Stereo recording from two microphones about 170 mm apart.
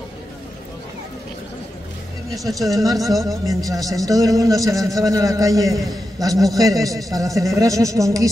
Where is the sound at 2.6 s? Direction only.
20° right (ahead or behind).